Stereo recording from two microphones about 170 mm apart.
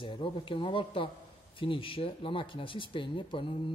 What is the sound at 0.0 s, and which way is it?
Speech, 30° left (ahead or behind).